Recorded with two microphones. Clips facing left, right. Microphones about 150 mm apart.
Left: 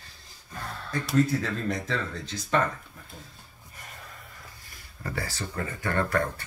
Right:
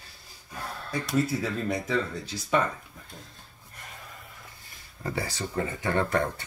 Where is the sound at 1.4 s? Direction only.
10° right (ahead or behind).